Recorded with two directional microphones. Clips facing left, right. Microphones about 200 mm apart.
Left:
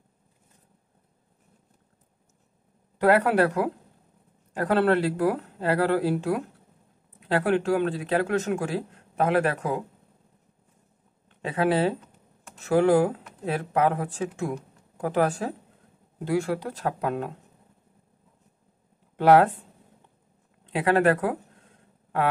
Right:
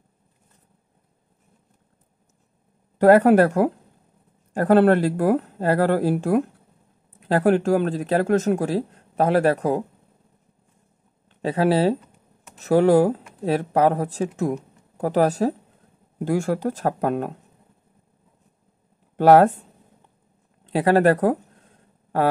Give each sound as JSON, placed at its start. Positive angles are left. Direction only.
{"t": 3.0, "sound": "speech", "side_deg": -40}
{"t": 11.4, "sound": "speech", "side_deg": -35}
{"t": 16.3, "sound": "speech", "side_deg": -45}
{"t": 19.1, "sound": "speech", "side_deg": -40}
{"t": 20.7, "sound": "speech", "side_deg": -35}